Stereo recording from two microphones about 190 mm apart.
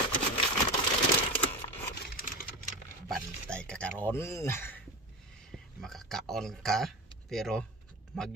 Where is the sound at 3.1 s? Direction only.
5° left (ahead or behind).